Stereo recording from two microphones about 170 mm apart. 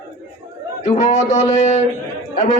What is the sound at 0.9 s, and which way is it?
A man's voice, 40° left (ahead or behind).